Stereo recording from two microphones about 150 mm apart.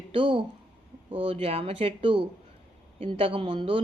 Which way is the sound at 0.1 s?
35° right (ahead or behind).